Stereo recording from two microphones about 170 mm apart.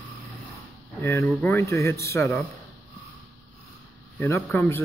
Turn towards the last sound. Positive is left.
turn(degrees=15)  # may be behind; listen again after turning